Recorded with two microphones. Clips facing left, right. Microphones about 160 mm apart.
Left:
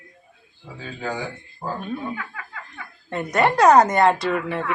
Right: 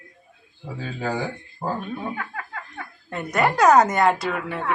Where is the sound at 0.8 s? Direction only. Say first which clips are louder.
Right 2 dB; 40° right (ahead or behind).